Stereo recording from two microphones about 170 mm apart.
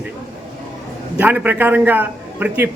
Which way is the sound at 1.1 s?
10° right (ahead or behind).